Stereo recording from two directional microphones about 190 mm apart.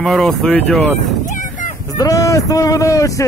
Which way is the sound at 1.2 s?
40° left (ahead or behind).